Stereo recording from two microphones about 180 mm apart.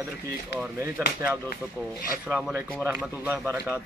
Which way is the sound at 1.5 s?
50° left (ahead or behind).